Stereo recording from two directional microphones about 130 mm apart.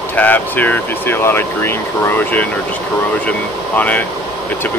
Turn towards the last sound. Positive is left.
turn(degrees=10)  # may be behind; listen again after turning